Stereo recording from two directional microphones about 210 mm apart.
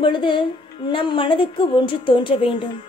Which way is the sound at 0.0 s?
25° left (ahead or behind).